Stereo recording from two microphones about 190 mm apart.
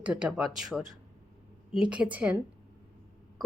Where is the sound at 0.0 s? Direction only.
5° right (ahead or behind).